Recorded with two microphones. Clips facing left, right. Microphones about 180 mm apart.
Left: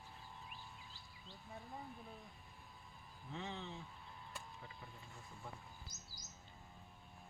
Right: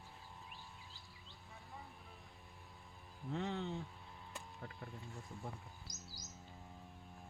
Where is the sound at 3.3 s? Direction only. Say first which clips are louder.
Right 6 dB; 50° right (ahead or behind).